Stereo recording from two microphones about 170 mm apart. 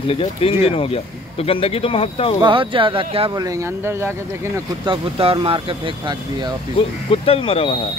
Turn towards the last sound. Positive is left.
turn(degrees=30)  # may be behind; listen again after turning